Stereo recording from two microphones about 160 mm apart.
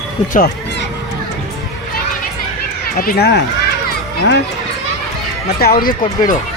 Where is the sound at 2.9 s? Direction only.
65° left (ahead or behind); by 3.4 s 90° left.